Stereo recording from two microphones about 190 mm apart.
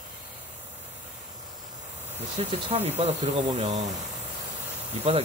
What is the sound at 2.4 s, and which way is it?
Speech, 35° right (ahead or behind).